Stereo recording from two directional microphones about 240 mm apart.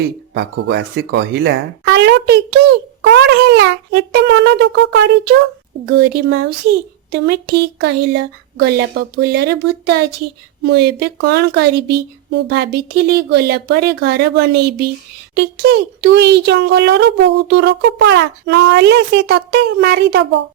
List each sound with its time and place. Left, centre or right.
0.3 s a child's voice: right